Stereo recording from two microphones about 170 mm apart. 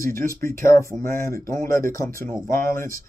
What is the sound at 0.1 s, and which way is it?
Speech, 15° left (ahead or behind).